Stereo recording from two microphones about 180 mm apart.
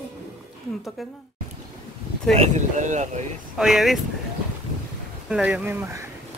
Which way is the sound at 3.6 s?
Centre (ahead or behind).